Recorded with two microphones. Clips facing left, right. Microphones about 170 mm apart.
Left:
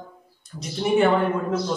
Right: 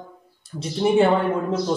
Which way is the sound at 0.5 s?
15° right (ahead or behind).